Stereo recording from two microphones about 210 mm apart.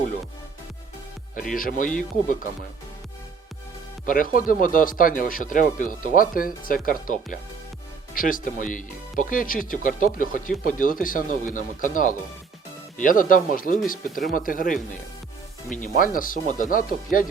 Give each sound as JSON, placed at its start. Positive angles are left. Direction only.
{"t": 1.5, "sound": "speech", "side_deg": 40}
{"t": 4.0, "sound": "speech", "side_deg": 40}
{"t": 15.8, "sound": "speech", "side_deg": 40}